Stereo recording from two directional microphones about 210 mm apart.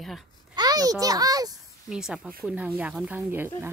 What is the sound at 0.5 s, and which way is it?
A child's voice, 20° right (ahead or behind).